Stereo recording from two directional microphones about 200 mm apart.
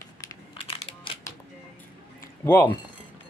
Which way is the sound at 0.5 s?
25° left (ahead or behind).